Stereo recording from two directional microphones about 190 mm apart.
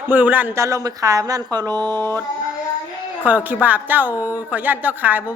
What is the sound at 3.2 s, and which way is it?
Speech, 10° right (ahead or behind).